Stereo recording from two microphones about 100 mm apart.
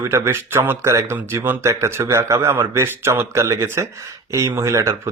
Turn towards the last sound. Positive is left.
turn(degrees=-30)  # may be behind; listen again after turning